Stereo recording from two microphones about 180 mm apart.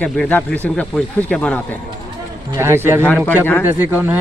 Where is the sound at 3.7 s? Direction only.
10° right (ahead or behind).